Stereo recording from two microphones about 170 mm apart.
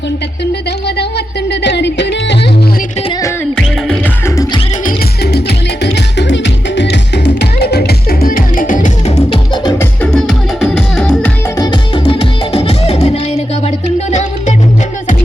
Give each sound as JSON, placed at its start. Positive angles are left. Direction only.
{"t": 0.9, "sound": "music", "side_deg": 75}
{"t": 3.5, "sound": "music", "side_deg": 0}
{"t": 4.9, "sound": "music", "side_deg": 75}
{"t": 9.7, "sound": "music", "side_deg": 5}
{"t": 11.5, "sound": "music", "side_deg": 25}